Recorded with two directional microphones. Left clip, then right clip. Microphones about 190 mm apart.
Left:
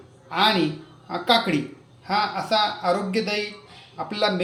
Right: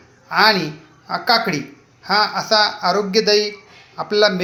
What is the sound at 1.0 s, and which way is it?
A man's voice, 15° right (ahead or behind).